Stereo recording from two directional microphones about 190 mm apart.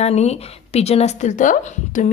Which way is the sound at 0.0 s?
35° left (ahead or behind).